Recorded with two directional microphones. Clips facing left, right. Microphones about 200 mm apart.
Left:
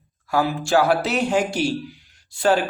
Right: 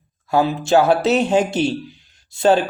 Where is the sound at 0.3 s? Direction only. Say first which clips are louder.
Right 4 dB; 20° right (ahead or behind).